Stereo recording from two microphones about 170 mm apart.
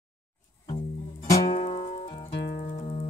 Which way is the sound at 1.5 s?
40° left (ahead or behind).